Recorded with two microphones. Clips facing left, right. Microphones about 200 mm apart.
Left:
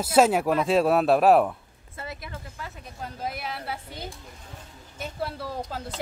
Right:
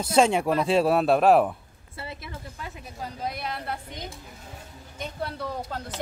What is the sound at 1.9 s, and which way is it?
Speech, 30° right (ahead or behind).